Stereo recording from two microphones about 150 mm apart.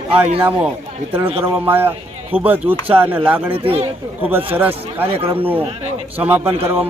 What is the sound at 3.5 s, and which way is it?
Speech, 40° right (ahead or behind).